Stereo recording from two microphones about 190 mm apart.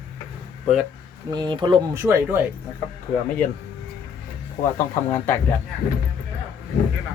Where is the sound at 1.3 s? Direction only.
20° right (ahead or behind).